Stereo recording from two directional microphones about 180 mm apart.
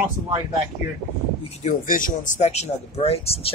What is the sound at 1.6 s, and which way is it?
A man's voice, 45° left (ahead or behind).